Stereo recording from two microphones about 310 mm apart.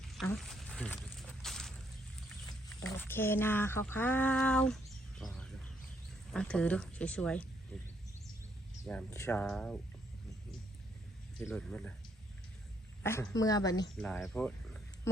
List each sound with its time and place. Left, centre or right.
0.0 s a sound: centre
2.6 s a woman's voice: centre
7.7 s wild animals: centre
8.9 s a woman's voice: centre
11.3 s a woman's voice: centre
13.0 s speech: centre
14.0 s cricket: centre